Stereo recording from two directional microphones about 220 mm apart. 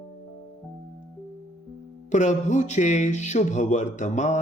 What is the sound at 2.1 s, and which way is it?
Speech, 35° left (ahead or behind).